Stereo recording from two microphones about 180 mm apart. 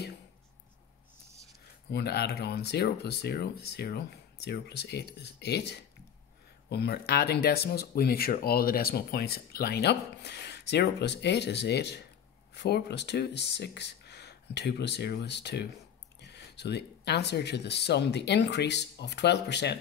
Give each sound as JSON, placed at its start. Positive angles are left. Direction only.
{"t": 1.9, "sound": "speech", "side_deg": 65}